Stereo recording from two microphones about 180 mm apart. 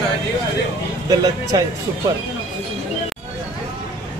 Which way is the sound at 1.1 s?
20° right (ahead or behind).